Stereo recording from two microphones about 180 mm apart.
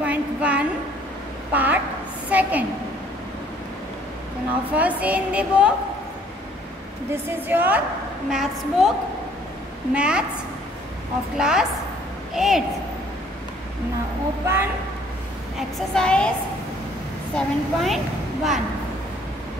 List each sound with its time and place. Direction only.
0.0 s a sound: 5° right (ahead or behind)
2.2 s a woman's voice: 10° right (ahead or behind)
4.7 s a woman's voice: 10° right (ahead or behind)
7.2 s a woman's voice: 10° right (ahead or behind)
9.9 s a woman's voice: 5° right (ahead or behind)
11.3 s a woman's voice: 5° right (ahead or behind)
14.4 s a woman's voice: 15° right (ahead or behind)
15.5 s a woman's voice: 5° left (ahead or behind)
17.4 s a woman's voice: centre (ahead or behind)